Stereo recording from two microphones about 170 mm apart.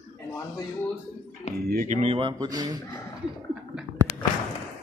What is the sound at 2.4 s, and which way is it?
Speech, 20° right (ahead or behind).